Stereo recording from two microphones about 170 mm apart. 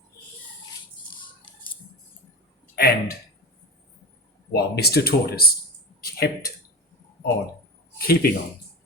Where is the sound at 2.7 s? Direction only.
65° left (ahead or behind).